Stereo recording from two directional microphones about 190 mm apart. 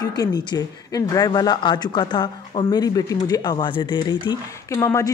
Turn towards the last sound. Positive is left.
turn(degrees=15)  # may be behind; listen again after turning